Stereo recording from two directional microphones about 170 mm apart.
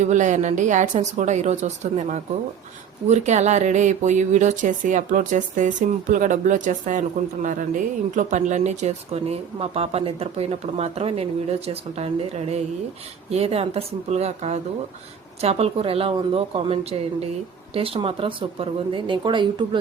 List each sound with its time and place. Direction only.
0.0 s speech: 45° right (ahead or behind)
8.1 s speech: 45° right (ahead or behind); by 19.8 s 30° right (ahead or behind)